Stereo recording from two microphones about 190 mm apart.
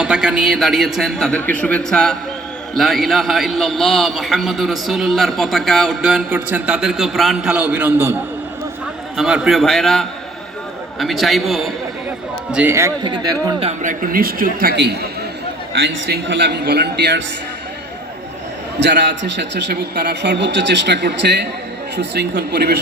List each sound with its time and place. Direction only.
0.0 s a man's voice: 5° right (ahead or behind)
9.1 s a man's voice: 5° right (ahead or behind)
12.7 s speech: 20° right (ahead or behind)
13.7 s a man's voice: 45° right (ahead or behind); by 17.2 s 65° right (ahead or behind)
18.8 s a man's voice: 65° right (ahead or behind)